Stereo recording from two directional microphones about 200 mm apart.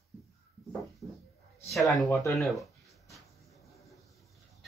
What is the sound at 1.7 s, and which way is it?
Speech, centre (ahead or behind).